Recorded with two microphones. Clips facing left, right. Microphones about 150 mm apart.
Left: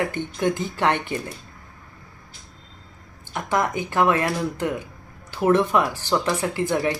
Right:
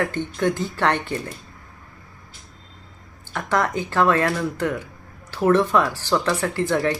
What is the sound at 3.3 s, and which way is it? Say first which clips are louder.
Speech: right 1 dB; 15° left (ahead or behind).